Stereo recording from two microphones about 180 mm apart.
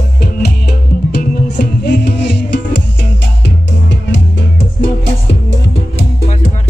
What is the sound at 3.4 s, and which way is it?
Music, 90° left.